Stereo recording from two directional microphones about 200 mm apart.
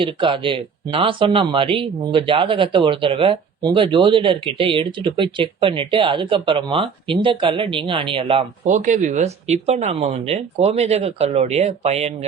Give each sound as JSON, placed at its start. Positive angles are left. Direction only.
{"t": 0.0, "sound": "speech", "side_deg": -25}